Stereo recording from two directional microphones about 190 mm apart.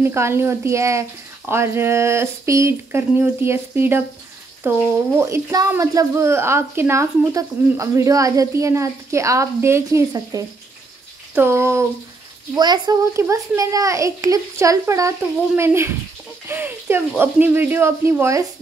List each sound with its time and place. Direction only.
0.0 s speech: 15° right (ahead or behind)